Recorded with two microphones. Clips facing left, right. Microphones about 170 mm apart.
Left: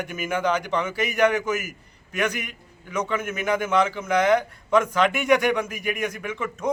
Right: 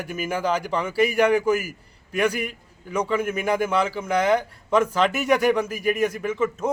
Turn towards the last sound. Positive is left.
turn(degrees=-30)  # may be behind; listen again after turning